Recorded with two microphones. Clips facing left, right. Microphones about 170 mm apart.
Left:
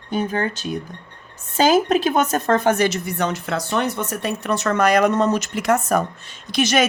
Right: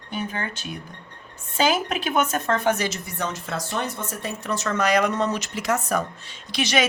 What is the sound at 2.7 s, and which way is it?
A woman's voice, 60° left (ahead or behind).